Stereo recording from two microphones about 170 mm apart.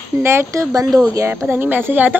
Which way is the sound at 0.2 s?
15° right (ahead or behind).